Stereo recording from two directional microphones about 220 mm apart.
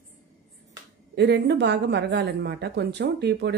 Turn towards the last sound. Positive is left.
turn(degrees=-50)  # may be behind; listen again after turning